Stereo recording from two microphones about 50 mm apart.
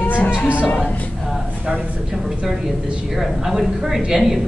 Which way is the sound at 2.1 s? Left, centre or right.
Centre.